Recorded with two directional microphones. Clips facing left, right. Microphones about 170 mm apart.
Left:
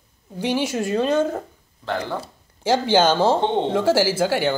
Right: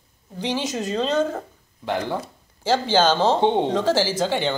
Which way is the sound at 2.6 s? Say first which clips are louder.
Left 2 dB; 15° left (ahead or behind).